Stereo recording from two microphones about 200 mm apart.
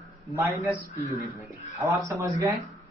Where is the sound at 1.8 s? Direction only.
15° right (ahead or behind).